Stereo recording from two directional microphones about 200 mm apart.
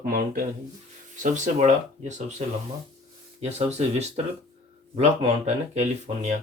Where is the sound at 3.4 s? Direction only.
30° right (ahead or behind).